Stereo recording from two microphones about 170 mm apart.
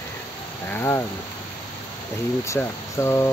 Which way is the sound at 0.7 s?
15° left (ahead or behind).